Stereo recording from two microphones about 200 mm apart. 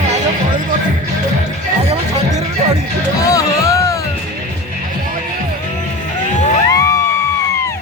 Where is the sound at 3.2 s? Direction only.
15° left (ahead or behind).